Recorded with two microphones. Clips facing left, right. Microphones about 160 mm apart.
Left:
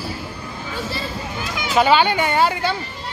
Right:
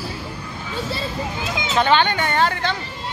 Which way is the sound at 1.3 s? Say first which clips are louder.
Right 1 dB; 20° right (ahead or behind).